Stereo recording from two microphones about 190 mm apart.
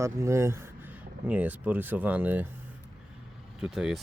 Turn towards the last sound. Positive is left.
turn(degrees=-5)  # may be behind; listen again after turning